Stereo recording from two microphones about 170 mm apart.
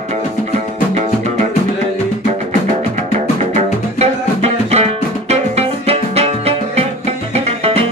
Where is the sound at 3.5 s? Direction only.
40° right (ahead or behind).